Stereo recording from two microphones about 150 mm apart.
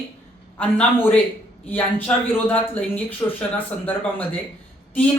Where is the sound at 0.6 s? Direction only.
10° left (ahead or behind).